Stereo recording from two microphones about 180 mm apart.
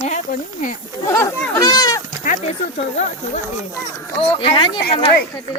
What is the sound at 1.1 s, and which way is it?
Goat, 15° left (ahead or behind).